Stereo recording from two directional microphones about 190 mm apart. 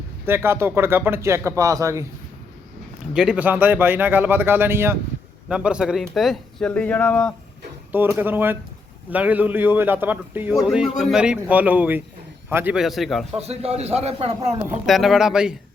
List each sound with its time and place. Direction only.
0.3 s speech: 15° right (ahead or behind)
3.2 s speech: 5° right (ahead or behind)
7.9 s speech: 10° right (ahead or behind)
13.4 s a man's voice: 35° right (ahead or behind)
14.8 s speech: centre (ahead or behind)